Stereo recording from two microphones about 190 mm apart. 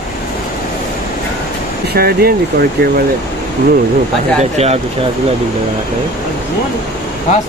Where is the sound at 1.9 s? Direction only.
55° right (ahead or behind).